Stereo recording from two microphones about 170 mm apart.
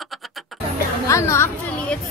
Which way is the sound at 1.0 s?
15° left (ahead or behind).